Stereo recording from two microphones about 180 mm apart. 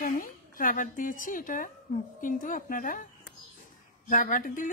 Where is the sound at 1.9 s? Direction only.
55° left (ahead or behind).